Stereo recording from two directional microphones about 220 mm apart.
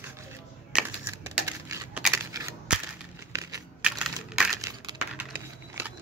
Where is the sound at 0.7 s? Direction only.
10° right (ahead or behind).